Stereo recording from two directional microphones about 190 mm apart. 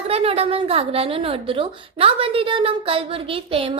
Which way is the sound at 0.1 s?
30° right (ahead or behind).